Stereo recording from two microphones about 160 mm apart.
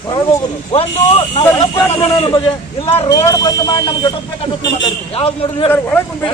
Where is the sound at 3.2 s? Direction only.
25° left (ahead or behind).